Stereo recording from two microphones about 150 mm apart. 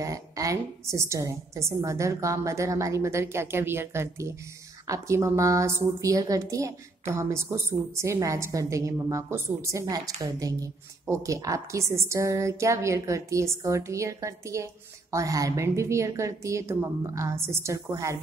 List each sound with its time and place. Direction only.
0.0 s a woman's voice: 20° right (ahead or behind)